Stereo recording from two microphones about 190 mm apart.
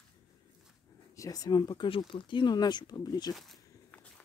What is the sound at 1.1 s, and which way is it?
Speech, 20° left (ahead or behind).